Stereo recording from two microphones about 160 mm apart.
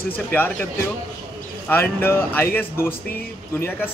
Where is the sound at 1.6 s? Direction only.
15° left (ahead or behind).